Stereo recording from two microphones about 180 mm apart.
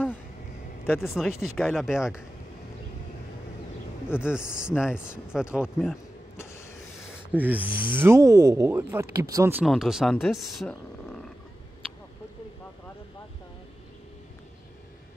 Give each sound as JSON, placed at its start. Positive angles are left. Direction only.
{"t": 0.8, "sound": "speech", "side_deg": 10}
{"t": 1.1, "sound": "speech", "side_deg": 0}
{"t": 4.2, "sound": "speech", "side_deg": -5}
{"t": 6.3, "sound": "vehicle", "side_deg": 15}
{"t": 7.3, "sound": "speech", "side_deg": -10}
{"t": 9.7, "sound": "speech", "side_deg": 0}